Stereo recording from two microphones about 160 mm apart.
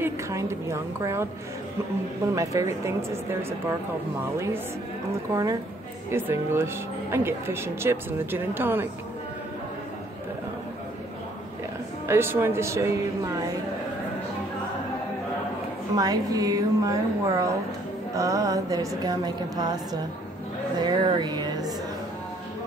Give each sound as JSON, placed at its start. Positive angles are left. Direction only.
{"t": 0.0, "sound": "a woman's voice", "side_deg": -15}
{"t": 5.3, "sound": "a woman's voice", "side_deg": -20}
{"t": 12.1, "sound": "speech", "side_deg": -15}
{"t": 16.0, "sound": "a woman's voice", "side_deg": -25}
{"t": 20.8, "sound": "music", "side_deg": -25}